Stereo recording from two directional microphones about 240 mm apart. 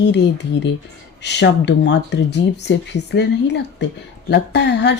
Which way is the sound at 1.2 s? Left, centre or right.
Left.